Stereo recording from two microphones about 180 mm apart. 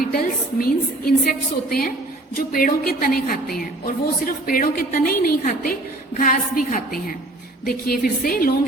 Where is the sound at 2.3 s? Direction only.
50° left (ahead or behind).